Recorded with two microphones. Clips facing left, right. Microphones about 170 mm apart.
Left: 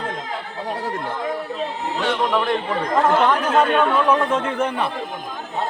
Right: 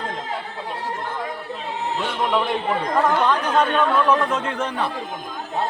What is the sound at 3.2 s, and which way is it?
Speech, 10° left (ahead or behind).